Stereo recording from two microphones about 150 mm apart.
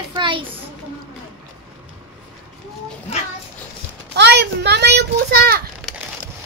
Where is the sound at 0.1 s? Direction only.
30° right (ahead or behind).